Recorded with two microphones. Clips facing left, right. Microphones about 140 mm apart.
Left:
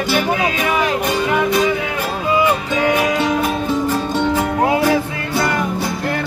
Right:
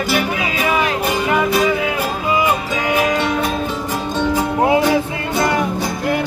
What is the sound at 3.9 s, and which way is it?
Music, 15° right (ahead or behind).